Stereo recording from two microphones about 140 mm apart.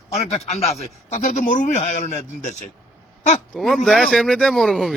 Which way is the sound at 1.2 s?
70° left (ahead or behind).